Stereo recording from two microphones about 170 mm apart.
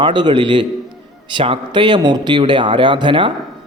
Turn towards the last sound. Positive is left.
turn(degrees=-30)  # may be behind; listen again after turning